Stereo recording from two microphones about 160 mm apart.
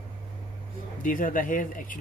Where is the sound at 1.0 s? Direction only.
60° left (ahead or behind).